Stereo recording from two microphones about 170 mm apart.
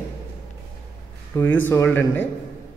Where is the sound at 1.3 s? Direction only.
10° left (ahead or behind).